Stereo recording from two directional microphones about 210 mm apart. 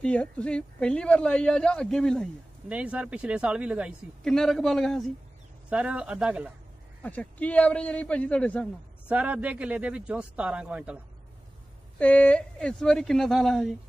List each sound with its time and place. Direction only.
0.0 s speech: 5° left (ahead or behind)
7.0 s a man's voice: 5° left (ahead or behind)
9.1 s speech: 5° right (ahead or behind)
12.0 s speech: 5° left (ahead or behind)